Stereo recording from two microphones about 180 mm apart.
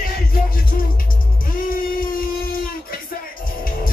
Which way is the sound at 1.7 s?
50° left (ahead or behind).